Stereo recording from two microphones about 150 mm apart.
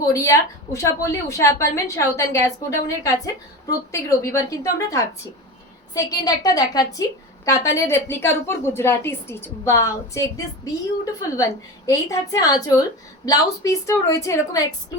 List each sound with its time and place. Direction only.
0.1 s a woman's voice: 20° left (ahead or behind)